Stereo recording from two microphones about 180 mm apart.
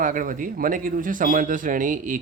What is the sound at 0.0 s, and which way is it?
Speech, 50° right (ahead or behind).